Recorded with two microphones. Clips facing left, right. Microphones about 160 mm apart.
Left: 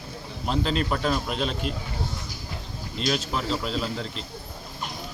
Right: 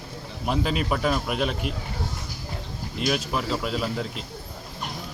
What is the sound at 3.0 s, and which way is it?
Speech, 10° right (ahead or behind).